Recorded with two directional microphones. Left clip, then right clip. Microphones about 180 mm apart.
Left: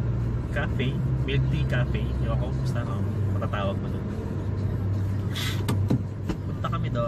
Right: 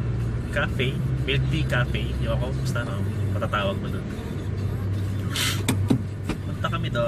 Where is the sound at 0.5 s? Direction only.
5° right (ahead or behind).